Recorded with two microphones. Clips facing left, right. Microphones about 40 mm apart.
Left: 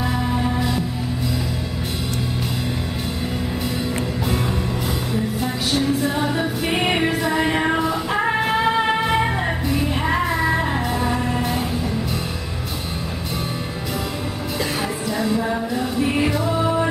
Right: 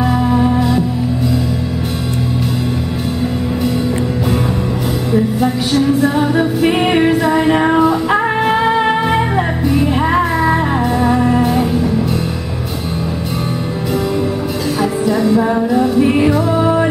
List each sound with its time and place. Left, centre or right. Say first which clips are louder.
0.0 s music: right 9 dB; centre
6.3 s music: right 9 dB; centre
15.0 s music: right 9 dB; centre
15.4 s music: right 9 dB; right